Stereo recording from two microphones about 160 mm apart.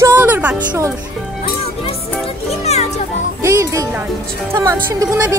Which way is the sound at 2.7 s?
45° left (ahead or behind).